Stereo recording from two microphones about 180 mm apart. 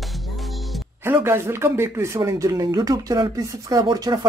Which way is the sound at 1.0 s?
15° right (ahead or behind).